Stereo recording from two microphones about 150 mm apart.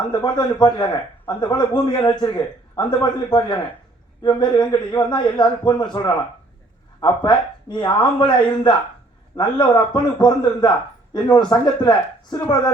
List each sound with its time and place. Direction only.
0.1 s speech: 30° left (ahead or behind)